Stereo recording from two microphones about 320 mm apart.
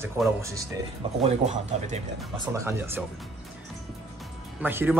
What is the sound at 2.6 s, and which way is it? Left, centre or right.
Speech, centre.